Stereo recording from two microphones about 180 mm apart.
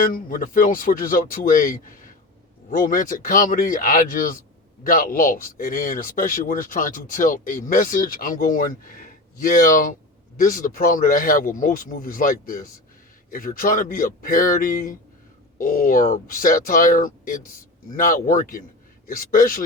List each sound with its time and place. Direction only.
0.0 s speech: 50° left (ahead or behind)